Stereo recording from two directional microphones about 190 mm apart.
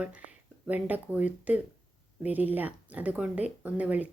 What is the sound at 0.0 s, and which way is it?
Speech, 5° right (ahead or behind).